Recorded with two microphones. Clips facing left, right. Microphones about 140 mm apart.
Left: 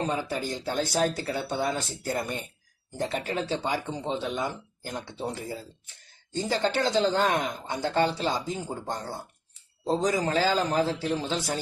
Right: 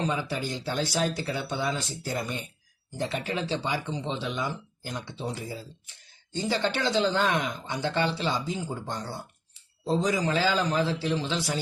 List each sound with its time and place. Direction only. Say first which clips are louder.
0.0 s speech: even; 45° left (ahead or behind)